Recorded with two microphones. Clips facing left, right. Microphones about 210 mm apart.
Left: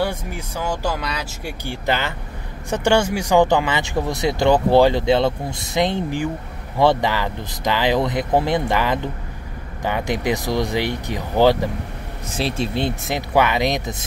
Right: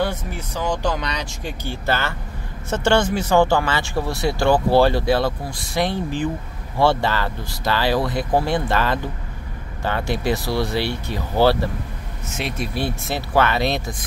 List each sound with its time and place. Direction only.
0.0 s speech: 10° left (ahead or behind)
12.3 s speech: 30° left (ahead or behind)